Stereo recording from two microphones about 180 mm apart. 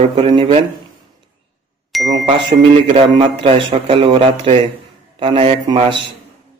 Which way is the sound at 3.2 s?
30° right (ahead or behind).